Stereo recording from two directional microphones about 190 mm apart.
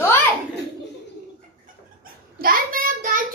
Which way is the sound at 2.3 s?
50° right (ahead or behind).